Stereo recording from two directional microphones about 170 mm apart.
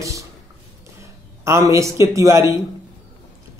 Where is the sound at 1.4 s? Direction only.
15° right (ahead or behind).